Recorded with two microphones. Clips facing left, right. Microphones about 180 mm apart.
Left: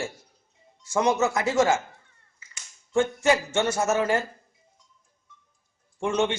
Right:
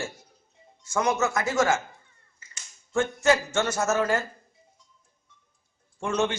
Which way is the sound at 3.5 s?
30° left (ahead or behind).